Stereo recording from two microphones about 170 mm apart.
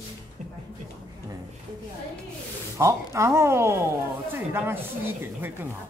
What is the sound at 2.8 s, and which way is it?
Speech, 15° right (ahead or behind).